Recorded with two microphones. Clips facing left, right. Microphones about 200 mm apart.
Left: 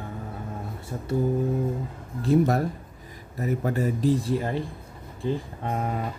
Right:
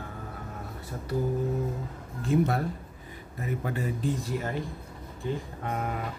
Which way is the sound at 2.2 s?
40° left (ahead or behind).